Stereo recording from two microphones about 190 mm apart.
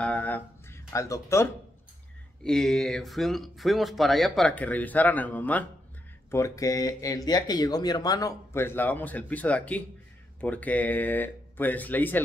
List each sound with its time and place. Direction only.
0.0 s speech: 5° left (ahead or behind)
2.4 s speech: 5° left (ahead or behind)